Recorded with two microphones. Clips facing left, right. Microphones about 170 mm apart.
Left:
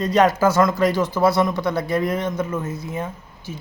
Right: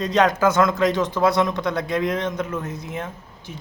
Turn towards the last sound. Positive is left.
turn(degrees=0)  # may be behind; listen again after turning